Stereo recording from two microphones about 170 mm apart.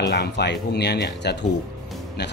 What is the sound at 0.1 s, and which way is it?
Speech, 80° left.